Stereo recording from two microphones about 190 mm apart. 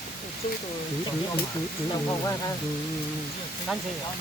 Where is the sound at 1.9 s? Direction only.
20° left (ahead or behind).